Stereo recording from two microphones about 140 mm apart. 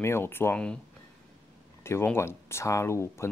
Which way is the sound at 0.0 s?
15° left (ahead or behind).